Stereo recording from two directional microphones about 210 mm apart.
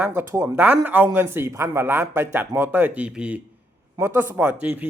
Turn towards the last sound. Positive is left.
turn(degrees=-5)  # may be behind; listen again after turning